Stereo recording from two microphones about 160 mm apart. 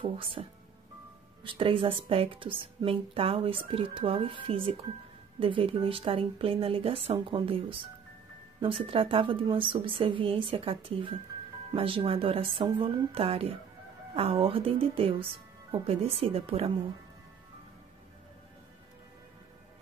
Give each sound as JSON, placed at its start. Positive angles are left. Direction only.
{"t": 0.0, "sound": "a woman's voice", "side_deg": -35}